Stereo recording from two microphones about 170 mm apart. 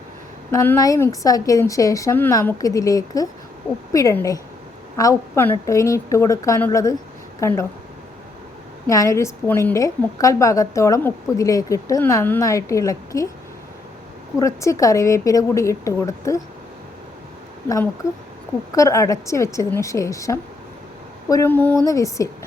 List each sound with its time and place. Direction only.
0.5 s a woman's voice: 15° left (ahead or behind)
8.9 s a woman's voice: 15° left (ahead or behind)
14.3 s a woman's voice: 20° left (ahead or behind)
18.7 s a woman's voice: 20° left (ahead or behind)